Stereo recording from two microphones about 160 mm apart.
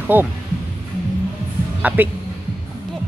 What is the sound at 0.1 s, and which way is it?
Speech, 10° right (ahead or behind).